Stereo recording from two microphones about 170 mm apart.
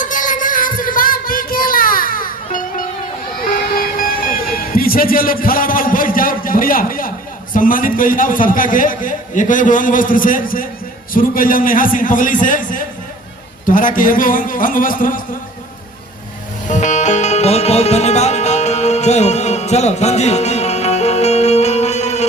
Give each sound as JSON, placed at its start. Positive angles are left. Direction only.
{"t": 0.0, "sound": "a sound", "side_deg": 50}
{"t": 3.5, "sound": "music", "side_deg": 55}
{"t": 7.5, "sound": "a man's voice", "side_deg": 55}
{"t": 16.6, "sound": "music", "side_deg": 45}